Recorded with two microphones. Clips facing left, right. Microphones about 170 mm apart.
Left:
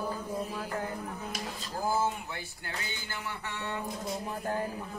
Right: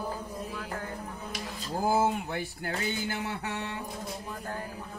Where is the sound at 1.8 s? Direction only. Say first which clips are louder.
Right 4 dB; 55° right (ahead or behind).